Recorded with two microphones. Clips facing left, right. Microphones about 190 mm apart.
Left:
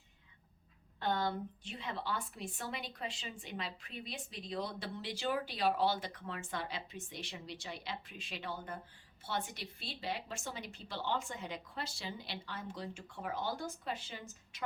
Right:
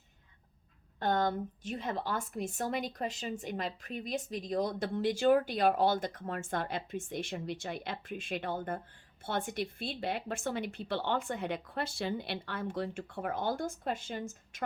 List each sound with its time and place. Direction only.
0.9 s a woman's voice: 45° right (ahead or behind)